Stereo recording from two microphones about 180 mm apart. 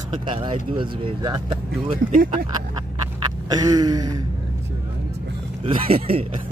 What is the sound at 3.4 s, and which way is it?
Speech, 20° right (ahead or behind).